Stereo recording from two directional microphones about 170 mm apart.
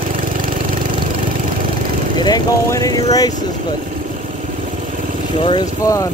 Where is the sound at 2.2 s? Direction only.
20° left (ahead or behind).